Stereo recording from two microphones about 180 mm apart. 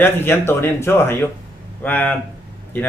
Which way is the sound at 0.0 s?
10° left (ahead or behind).